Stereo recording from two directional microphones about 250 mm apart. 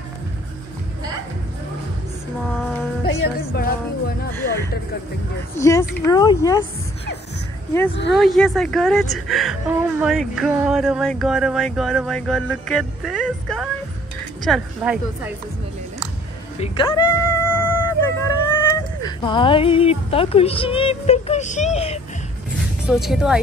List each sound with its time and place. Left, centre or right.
2.6 s music: centre
3.3 s music: left
4.3 s speech: centre
8.1 s speech: centre
16.5 s cat: left; by 17.9 s centre
18.5 s speech: centre
22.8 s speech: centre